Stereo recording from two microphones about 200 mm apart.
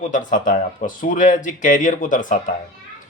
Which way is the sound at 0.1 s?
40° left (ahead or behind).